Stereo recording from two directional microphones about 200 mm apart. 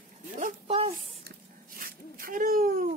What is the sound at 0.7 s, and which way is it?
Speech, 30° right (ahead or behind).